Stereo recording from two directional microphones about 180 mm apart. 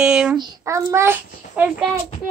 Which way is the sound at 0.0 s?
5° right (ahead or behind).